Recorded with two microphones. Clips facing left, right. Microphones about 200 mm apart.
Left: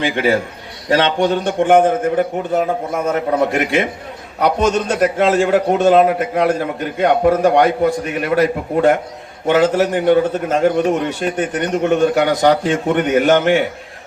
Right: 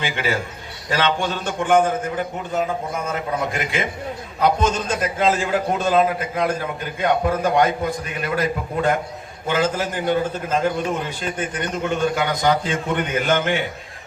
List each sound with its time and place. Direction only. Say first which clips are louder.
0.0 s a man's voice: left 8 dB; 55° left (ahead or behind)
1.5 s a man's voice: left 4 dB; 60° left (ahead or behind)